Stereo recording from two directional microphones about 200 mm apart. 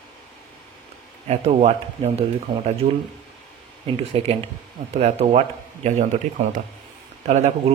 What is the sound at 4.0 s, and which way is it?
Speech, 30° right (ahead or behind).